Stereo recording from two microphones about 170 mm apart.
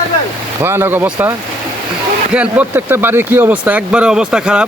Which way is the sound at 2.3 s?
10° right (ahead or behind).